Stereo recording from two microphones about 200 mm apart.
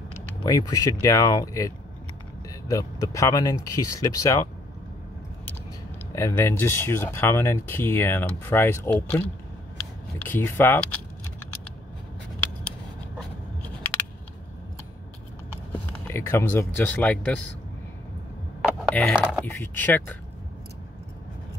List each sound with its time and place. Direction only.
0.4 s speech: 20° left (ahead or behind)
2.7 s speech: 15° left (ahead or behind)
6.1 s speech: 15° left (ahead or behind)
10.2 s speech: 10° left (ahead or behind)
15.9 s speech: 10° left (ahead or behind)
18.6 s a sound: centre (ahead or behind)
19.4 s speech: 10° left (ahead or behind)